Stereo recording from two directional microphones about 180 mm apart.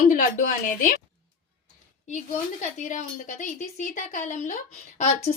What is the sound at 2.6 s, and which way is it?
Speech, 40° left (ahead or behind).